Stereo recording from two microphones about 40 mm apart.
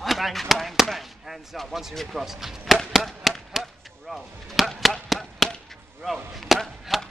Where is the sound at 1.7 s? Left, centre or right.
Centre.